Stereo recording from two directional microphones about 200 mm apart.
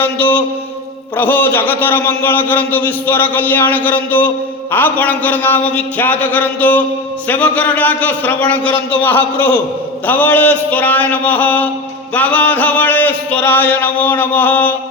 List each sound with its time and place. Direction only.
1.1 s a man's voice: 10° left (ahead or behind)